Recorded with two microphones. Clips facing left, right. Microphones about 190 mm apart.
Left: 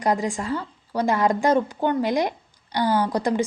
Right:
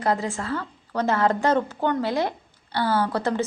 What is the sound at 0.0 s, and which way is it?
Speech, 15° left (ahead or behind).